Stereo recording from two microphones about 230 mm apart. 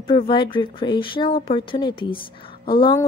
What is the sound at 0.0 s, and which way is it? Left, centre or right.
A woman's voice, left.